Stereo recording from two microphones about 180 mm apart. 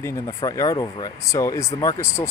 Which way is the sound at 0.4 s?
20° left (ahead or behind).